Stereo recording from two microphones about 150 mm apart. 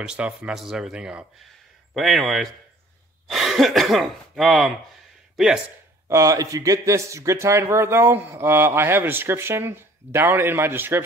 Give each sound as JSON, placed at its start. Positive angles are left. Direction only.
{"t": 0.0, "sound": "speech", "side_deg": -5}
{"t": 6.0, "sound": "speech", "side_deg": -20}